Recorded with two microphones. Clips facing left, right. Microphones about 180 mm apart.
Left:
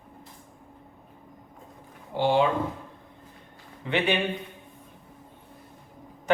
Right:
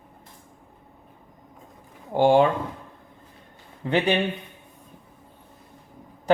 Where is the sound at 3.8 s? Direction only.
40° right (ahead or behind).